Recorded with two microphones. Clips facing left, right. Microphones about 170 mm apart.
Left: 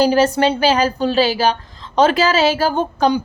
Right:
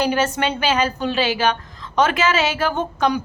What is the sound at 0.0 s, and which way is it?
A woman's voice, 35° left (ahead or behind).